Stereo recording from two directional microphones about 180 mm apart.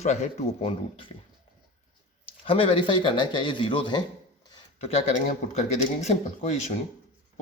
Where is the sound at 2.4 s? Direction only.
30° left (ahead or behind).